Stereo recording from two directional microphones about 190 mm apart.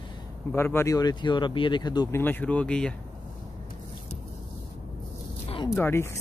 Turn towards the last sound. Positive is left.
turn(degrees=15)  # may be behind; listen again after turning